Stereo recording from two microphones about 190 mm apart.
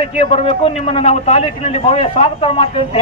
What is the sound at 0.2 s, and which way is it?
A man's voice, 30° left (ahead or behind).